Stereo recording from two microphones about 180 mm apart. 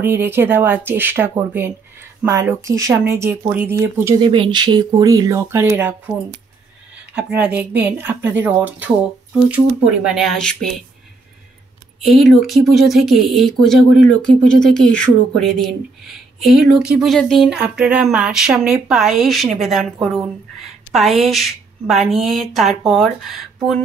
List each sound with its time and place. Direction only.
0.0 s speech: 10° right (ahead or behind)
4.3 s speech: 25° right (ahead or behind)
7.2 s speech: 5° right (ahead or behind)
12.0 s speech: centre (ahead or behind)